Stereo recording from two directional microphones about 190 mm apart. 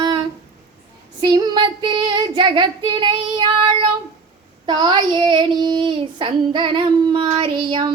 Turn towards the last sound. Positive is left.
turn(degrees=-25)  # may be behind; listen again after turning